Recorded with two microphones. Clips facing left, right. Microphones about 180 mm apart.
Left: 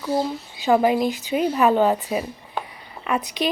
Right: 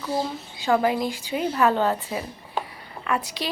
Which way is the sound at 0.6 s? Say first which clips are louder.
Left 4 dB; 15° left (ahead or behind).